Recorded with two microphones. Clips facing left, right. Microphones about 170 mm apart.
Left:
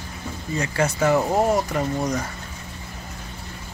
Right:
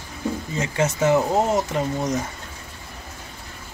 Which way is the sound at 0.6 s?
20° right (ahead or behind).